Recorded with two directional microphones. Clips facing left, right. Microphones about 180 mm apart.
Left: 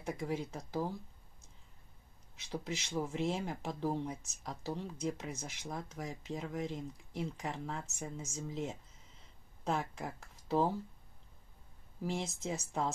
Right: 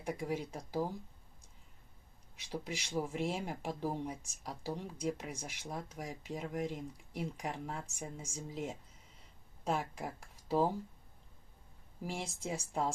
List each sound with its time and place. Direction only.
0.0 s speech: 10° right (ahead or behind)
2.3 s speech: 10° right (ahead or behind)
12.0 s speech: 10° right (ahead or behind)